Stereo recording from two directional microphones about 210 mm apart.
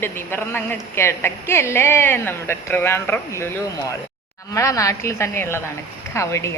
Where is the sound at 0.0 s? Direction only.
10° left (ahead or behind).